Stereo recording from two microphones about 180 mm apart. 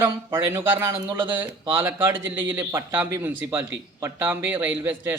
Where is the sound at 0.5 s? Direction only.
20° right (ahead or behind).